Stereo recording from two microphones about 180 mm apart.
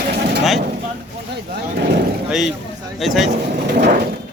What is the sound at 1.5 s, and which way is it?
Speech, 65° right (ahead or behind).